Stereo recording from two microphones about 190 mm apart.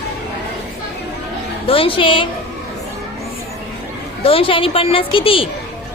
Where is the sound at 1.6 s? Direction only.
30° left (ahead or behind).